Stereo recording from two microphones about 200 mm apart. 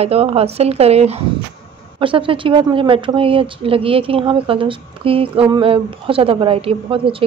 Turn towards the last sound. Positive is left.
turn(degrees=-25)  # may be behind; listen again after turning